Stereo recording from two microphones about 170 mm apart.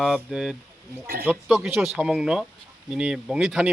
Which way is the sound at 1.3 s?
5° right (ahead or behind).